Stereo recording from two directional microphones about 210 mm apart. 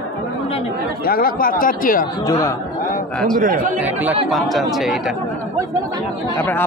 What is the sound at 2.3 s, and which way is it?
Speech, 15° left (ahead or behind).